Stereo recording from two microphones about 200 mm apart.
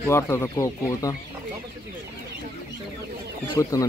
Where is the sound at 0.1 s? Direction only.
15° left (ahead or behind).